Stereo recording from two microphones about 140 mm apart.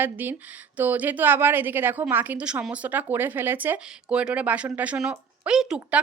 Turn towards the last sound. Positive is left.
turn(degrees=-5)  # may be behind; listen again after turning